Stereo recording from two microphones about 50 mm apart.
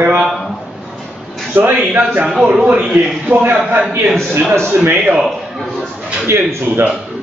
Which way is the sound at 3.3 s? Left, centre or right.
Right.